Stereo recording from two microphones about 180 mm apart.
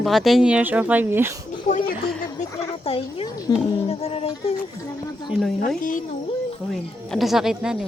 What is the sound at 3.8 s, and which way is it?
Speech, 35° left (ahead or behind).